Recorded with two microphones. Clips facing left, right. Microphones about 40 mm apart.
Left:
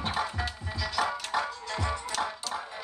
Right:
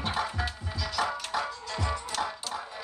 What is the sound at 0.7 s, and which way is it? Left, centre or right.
Music, centre.